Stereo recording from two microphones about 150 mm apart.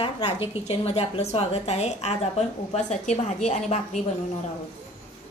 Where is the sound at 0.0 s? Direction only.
45° left (ahead or behind).